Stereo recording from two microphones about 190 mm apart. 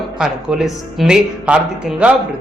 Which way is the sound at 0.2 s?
Centre (ahead or behind).